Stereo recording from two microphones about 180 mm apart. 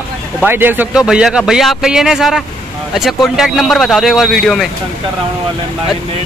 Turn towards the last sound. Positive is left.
turn(degrees=0)  # may be behind; listen again after turning